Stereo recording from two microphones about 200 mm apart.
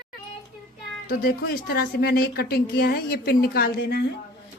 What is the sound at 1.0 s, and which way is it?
A woman's voice, 50° left (ahead or behind).